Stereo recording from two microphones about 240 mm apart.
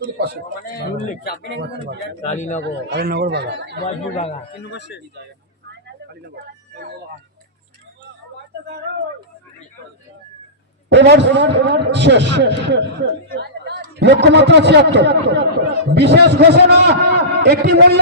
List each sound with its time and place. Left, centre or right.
1.0 s speech: left
1.5 s a man's voice: right
2.2 s a man's voice: left
2.9 s a man's voice: right
3.8 s a man's voice: left
6.2 s speech: right
10.8 s a man's voice: right